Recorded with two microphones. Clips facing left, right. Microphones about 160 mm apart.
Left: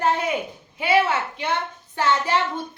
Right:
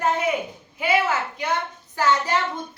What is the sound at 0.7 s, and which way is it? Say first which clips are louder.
A woman's voice: left 2 dB; 30° left (ahead or behind).